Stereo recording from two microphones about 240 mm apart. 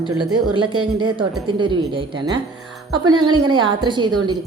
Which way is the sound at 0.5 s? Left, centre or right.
Right.